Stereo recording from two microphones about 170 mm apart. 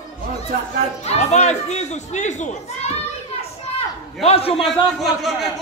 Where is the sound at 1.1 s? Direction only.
40° left (ahead or behind).